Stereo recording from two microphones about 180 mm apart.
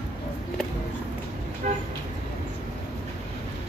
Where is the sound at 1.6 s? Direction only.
45° right (ahead or behind).